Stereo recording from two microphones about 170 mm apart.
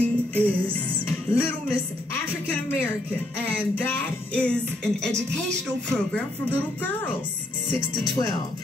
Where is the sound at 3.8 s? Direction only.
10° left (ahead or behind).